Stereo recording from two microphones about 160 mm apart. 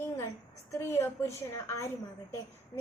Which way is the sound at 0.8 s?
15° left (ahead or behind).